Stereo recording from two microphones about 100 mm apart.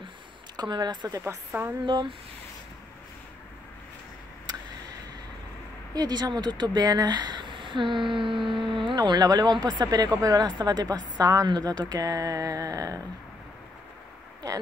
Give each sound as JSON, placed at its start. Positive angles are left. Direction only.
{"t": 0.6, "sound": "speech", "side_deg": -45}
{"t": 1.5, "sound": "speech", "side_deg": -20}
{"t": 1.9, "sound": "speech", "side_deg": -50}
{"t": 5.9, "sound": "speech", "side_deg": -45}